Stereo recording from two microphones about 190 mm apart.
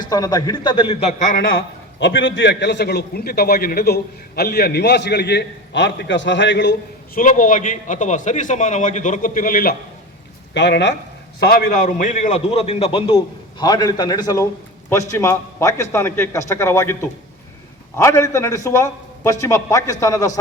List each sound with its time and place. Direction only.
0.0 s a man's voice: 20° left (ahead or behind); by 7.2 s 65° left (ahead or behind)
7.2 s a man's voice: 45° left (ahead or behind)
10.5 s a man's voice: 65° left (ahead or behind)
11.3 s a man's voice: 50° left (ahead or behind); by 20.3 s 15° left (ahead or behind)